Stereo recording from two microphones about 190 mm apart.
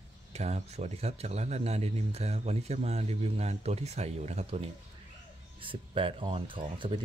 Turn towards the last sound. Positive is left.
turn(degrees=-25)  # may be behind; listen again after turning